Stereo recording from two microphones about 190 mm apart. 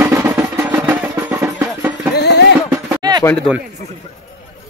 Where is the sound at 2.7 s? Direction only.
20° right (ahead or behind).